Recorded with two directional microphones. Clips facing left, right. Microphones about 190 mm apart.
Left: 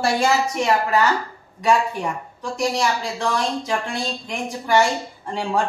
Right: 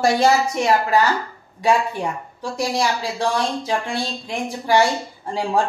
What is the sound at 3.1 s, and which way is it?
Speech, 35° right (ahead or behind).